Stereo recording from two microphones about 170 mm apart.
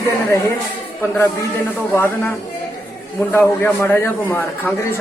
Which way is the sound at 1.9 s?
15° left (ahead or behind).